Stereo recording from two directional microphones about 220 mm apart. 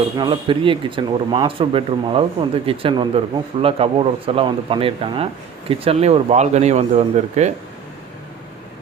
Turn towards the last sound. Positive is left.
turn(degrees=-30)  # may be behind; listen again after turning